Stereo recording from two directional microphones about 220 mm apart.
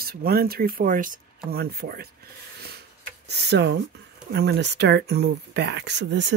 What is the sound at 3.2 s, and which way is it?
Speech, 50° right (ahead or behind).